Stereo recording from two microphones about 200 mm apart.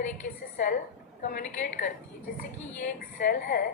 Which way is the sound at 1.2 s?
40° left (ahead or behind).